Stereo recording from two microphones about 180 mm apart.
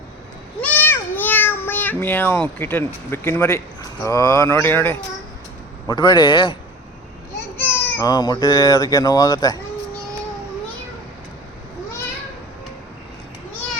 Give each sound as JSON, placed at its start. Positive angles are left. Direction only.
{"t": 0.6, "sound": "a sound", "side_deg": 10}
{"t": 4.0, "sound": "speech", "side_deg": 20}
{"t": 5.9, "sound": "speech", "side_deg": 25}
{"t": 7.6, "sound": "speech", "side_deg": 15}